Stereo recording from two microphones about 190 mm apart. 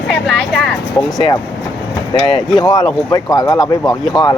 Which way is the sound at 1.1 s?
20° left (ahead or behind).